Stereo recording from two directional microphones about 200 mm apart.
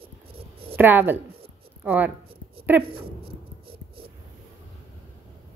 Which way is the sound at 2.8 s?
25° right (ahead or behind).